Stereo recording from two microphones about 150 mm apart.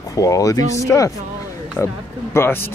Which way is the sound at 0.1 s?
20° left (ahead or behind).